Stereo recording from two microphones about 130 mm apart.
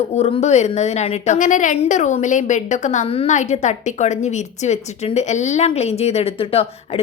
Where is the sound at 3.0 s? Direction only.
45° left (ahead or behind).